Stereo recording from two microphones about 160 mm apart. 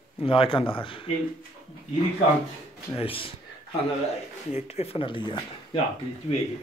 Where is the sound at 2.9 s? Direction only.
35° left (ahead or behind).